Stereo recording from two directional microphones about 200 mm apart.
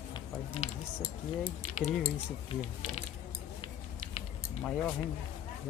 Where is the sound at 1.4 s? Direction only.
35° left (ahead or behind).